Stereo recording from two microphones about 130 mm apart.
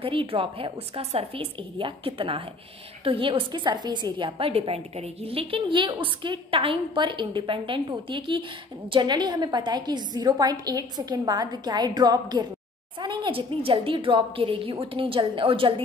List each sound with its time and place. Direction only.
0.0 s a woman's voice: 45° right (ahead or behind)